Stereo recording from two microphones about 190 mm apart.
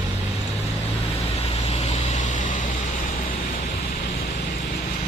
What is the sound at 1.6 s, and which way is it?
Vehicle, 35° left (ahead or behind).